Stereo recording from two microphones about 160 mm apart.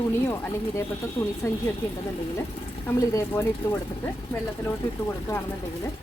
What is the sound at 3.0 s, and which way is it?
Speech, 15° left (ahead or behind).